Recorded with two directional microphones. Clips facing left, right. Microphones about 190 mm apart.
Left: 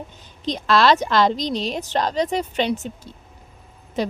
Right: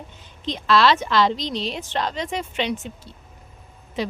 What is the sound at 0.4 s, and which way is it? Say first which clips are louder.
A woman's voice: left 1 dB; 45° left (ahead or behind).